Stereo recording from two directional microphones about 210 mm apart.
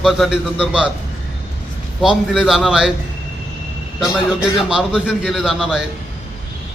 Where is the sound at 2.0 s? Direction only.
Centre (ahead or behind).